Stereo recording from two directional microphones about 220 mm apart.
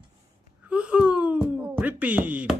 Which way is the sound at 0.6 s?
5° right (ahead or behind).